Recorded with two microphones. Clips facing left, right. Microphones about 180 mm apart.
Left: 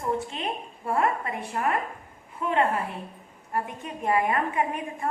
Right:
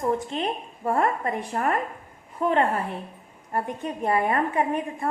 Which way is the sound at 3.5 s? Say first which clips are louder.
Right 3 dB; 35° right (ahead or behind).